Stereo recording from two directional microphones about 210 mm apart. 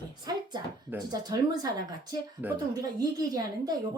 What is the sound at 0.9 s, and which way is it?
A woman's voice, 20° right (ahead or behind).